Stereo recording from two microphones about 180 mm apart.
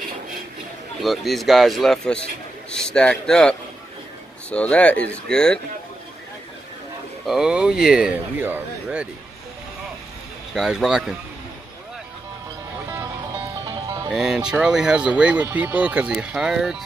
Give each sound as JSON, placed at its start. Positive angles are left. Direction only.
{"t": 1.0, "sound": "a man's voice", "side_deg": 0}
{"t": 7.2, "sound": "speech", "side_deg": -5}
{"t": 10.5, "sound": "speech", "side_deg": 0}
{"t": 13.7, "sound": "music", "side_deg": -20}
{"t": 14.1, "sound": "speech", "side_deg": -5}